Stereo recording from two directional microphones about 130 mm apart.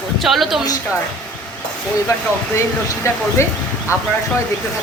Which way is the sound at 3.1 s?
25° left (ahead or behind).